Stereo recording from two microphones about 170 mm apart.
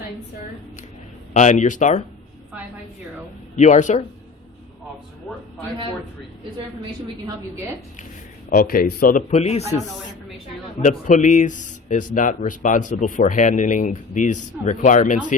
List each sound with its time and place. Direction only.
1.3 s speech: 45° left (ahead or behind)
3.5 s speech: 45° left (ahead or behind)
8.4 s speech: 55° left (ahead or behind)
9.3 s a man's voice: 40° left (ahead or behind)